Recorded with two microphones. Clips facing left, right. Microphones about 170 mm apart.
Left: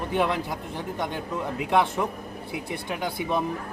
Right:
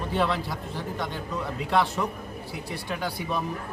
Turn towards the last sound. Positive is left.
turn(degrees=20)  # may be behind; listen again after turning